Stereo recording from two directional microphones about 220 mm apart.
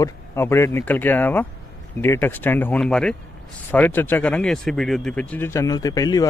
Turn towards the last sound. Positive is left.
turn(degrees=15)  # may be behind; listen again after turning